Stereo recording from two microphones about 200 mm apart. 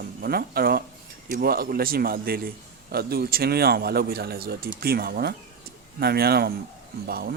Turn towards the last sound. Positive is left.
turn(degrees=-50)  # may be behind; listen again after turning